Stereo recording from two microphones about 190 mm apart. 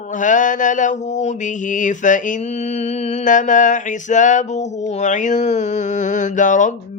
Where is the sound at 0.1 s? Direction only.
40° left (ahead or behind).